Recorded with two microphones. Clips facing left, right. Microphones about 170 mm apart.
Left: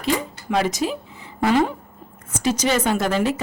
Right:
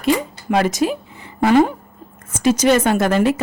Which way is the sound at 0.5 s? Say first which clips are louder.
Right 4 dB; 55° right (ahead or behind).